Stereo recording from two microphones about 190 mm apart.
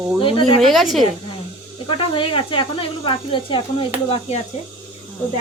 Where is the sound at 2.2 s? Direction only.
25° left (ahead or behind).